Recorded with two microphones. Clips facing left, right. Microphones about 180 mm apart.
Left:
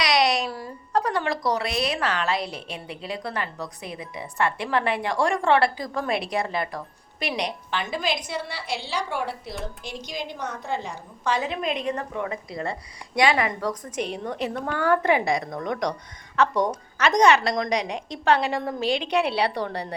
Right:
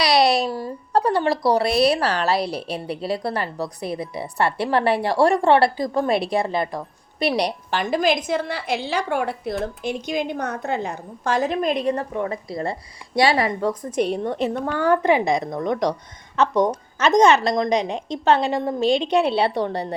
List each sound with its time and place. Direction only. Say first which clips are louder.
0.0 s a woman's voice: right 4 dB; 35° right (ahead or behind)